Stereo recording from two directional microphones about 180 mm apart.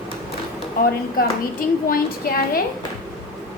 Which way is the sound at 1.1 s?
50° left (ahead or behind).